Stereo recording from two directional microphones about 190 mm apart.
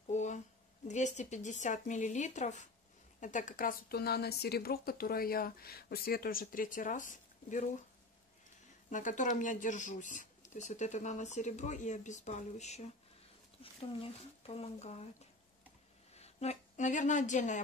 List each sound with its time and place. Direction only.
0.1 s a sound: 40° left (ahead or behind)
0.8 s speech: 40° left (ahead or behind)
8.9 s speech: 40° left (ahead or behind)
16.2 s a woman's voice: 35° left (ahead or behind)